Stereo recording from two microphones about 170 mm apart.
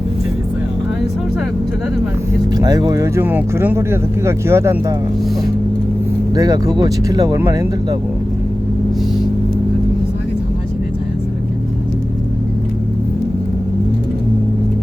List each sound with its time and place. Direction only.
2.6 s speech: 20° right (ahead or behind)
6.3 s speech: 20° right (ahead or behind)